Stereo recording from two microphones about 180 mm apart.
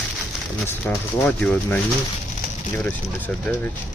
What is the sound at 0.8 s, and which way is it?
Speech, 5° left (ahead or behind).